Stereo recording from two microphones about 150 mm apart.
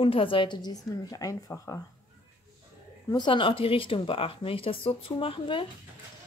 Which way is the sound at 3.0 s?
30° left (ahead or behind).